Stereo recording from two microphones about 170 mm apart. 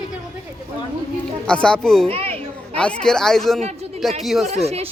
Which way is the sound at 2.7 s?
5° left (ahead or behind).